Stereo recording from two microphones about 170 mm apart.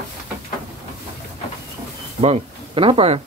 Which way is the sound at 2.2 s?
35° right (ahead or behind).